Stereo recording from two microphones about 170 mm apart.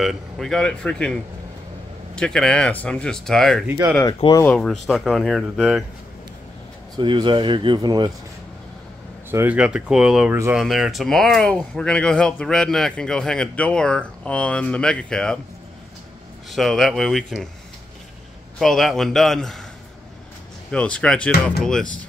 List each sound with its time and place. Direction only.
0.0 s speech: centre (ahead or behind)
3.6 s speech: 15° right (ahead or behind)
4.0 s speech: 25° left (ahead or behind)
4.5 s speech: centre (ahead or behind)
7.0 s speech: 25° right (ahead or behind)
9.3 s speech: 10° right (ahead or behind); by 15.3 s 5° left (ahead or behind)
16.4 s speech: centre (ahead or behind)
18.6 s speech: centre (ahead or behind)
20.7 s speech: 5° left (ahead or behind)